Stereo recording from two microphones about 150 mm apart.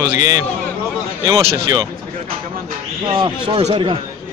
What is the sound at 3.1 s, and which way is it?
Speech, 35° right (ahead or behind).